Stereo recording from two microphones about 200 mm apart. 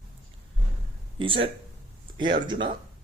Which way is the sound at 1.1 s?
25° right (ahead or behind).